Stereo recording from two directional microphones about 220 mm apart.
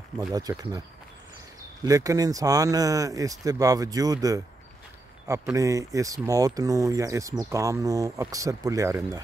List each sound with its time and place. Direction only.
0.3 s speech: 15° right (ahead or behind)
1.9 s speech: 15° right (ahead or behind)